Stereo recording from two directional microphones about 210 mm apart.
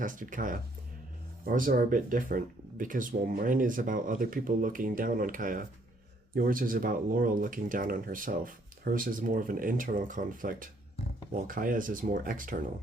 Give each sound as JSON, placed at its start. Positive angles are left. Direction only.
{"t": 0.0, "sound": "speech", "side_deg": -40}